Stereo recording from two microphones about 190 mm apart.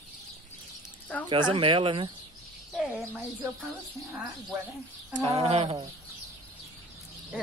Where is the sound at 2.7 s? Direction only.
10° right (ahead or behind).